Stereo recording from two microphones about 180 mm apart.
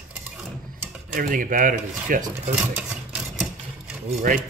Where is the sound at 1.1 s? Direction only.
50° right (ahead or behind).